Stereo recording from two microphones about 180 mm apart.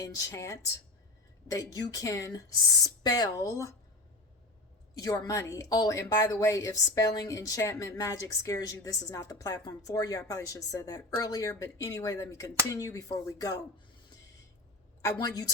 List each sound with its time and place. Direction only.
0.2 s a woman's voice: 20° left (ahead or behind)
4.9 s a woman's voice: 20° left (ahead or behind)
15.0 s a woman's voice: 20° left (ahead or behind)